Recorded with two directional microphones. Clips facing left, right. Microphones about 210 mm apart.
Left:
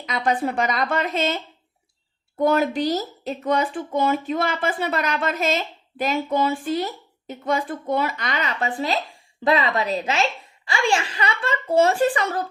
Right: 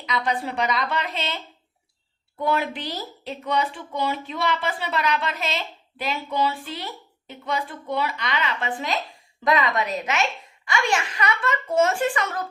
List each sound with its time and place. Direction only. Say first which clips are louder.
0.0 s speech: left 3 dB; 50° left (ahead or behind)
2.4 s speech: left 6 dB; 40° left (ahead or behind)